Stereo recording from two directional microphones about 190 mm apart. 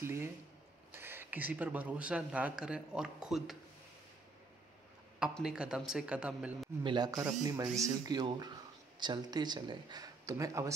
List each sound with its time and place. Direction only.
0.0 s speech: 15° right (ahead or behind)
5.2 s speech: 5° right (ahead or behind)
6.8 s speech: 25° right (ahead or behind)